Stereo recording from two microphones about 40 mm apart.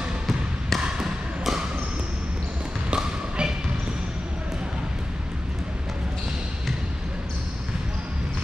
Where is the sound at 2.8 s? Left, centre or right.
Right.